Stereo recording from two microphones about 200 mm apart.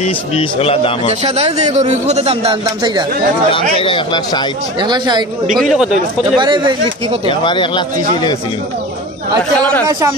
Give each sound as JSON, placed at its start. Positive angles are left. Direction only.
{"t": 0.0, "sound": "speech", "side_deg": 30}
{"t": 1.2, "sound": "a man's voice", "side_deg": -30}
{"t": 3.7, "sound": "speech", "side_deg": 25}
{"t": 4.7, "sound": "speech", "side_deg": -20}
{"t": 5.5, "sound": "speech", "side_deg": 0}
{"t": 6.3, "sound": "speech", "side_deg": -25}
{"t": 7.2, "sound": "speech", "side_deg": 25}
{"t": 9.6, "sound": "speech", "side_deg": 10}
{"t": 9.8, "sound": "a man's voice", "side_deg": -15}